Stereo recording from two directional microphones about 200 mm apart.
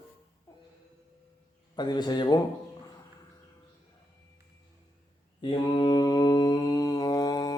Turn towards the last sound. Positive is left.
turn(degrees=20)  # may be behind; listen again after turning